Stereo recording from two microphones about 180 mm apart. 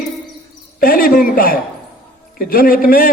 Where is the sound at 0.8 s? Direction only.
50° left (ahead or behind).